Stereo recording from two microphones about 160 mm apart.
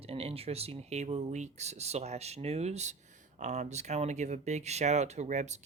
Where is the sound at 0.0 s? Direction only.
35° right (ahead or behind).